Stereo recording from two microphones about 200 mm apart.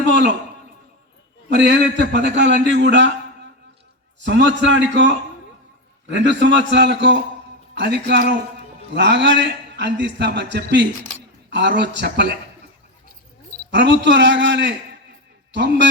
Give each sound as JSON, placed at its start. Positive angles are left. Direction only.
{"t": 1.5, "sound": "a man's voice", "side_deg": -60}
{"t": 2.7, "sound": "a sound", "side_deg": -65}
{"t": 4.3, "sound": "a man's voice", "side_deg": -65}
{"t": 13.7, "sound": "a man's voice", "side_deg": -60}